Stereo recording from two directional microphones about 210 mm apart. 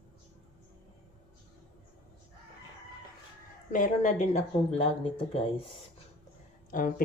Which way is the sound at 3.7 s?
35° left (ahead or behind).